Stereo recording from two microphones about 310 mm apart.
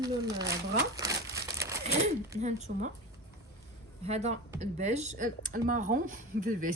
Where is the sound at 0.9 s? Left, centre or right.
Centre.